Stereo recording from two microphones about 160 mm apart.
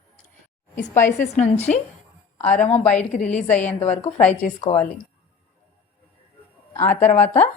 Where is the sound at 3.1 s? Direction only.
45° left (ahead or behind).